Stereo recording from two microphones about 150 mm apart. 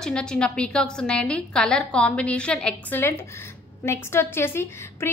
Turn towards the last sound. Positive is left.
turn(degrees=15)  # may be behind; listen again after turning